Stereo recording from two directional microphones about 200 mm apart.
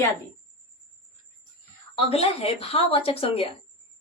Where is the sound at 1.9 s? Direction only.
30° left (ahead or behind).